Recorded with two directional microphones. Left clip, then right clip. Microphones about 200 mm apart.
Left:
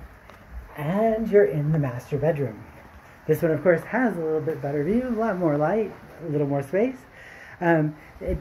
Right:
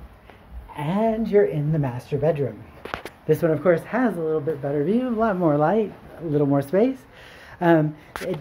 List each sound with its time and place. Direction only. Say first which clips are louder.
0.7 s speech: even; 10° right (ahead or behind); by 6.9 s 30° right (ahead or behind)
7.5 s speech: right 3 dB; 20° right (ahead or behind)